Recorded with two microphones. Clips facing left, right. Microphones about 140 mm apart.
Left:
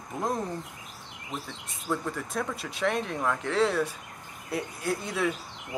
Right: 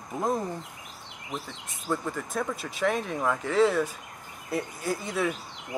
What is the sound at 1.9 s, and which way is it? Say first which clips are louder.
Speech: right 1 dB; centre (ahead or behind).